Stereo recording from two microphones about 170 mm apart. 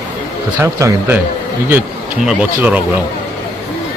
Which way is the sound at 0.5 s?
15° right (ahead or behind).